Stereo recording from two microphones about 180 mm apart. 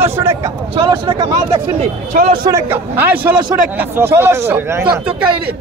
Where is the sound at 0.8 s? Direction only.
25° right (ahead or behind).